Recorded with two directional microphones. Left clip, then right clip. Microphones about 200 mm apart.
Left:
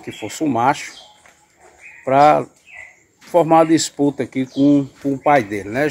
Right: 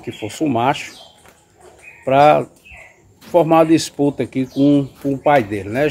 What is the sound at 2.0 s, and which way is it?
Speech, 25° left (ahead or behind).